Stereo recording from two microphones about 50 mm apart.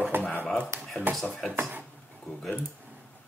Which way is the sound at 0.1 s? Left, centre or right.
Right.